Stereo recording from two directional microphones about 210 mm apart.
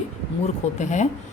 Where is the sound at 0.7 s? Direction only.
35° left (ahead or behind).